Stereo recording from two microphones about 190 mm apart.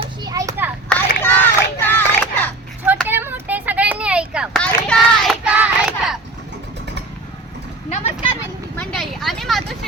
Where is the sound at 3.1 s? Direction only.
10° right (ahead or behind).